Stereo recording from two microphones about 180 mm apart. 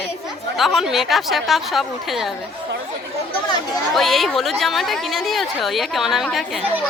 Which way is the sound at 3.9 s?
Centre (ahead or behind).